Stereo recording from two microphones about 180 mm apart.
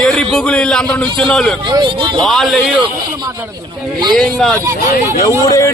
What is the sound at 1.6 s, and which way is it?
Speech, 25° right (ahead or behind).